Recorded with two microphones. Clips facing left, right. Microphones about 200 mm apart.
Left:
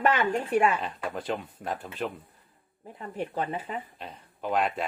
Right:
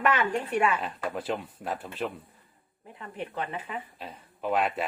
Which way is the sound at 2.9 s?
35° left (ahead or behind).